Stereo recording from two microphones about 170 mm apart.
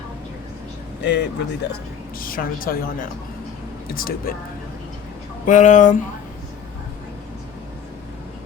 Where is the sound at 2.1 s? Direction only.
55° left (ahead or behind).